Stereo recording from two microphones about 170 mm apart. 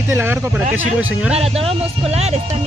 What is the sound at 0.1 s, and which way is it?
Speech, 15° right (ahead or behind).